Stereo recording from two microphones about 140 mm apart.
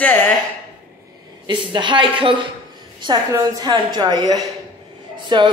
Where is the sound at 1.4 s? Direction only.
35° right (ahead or behind).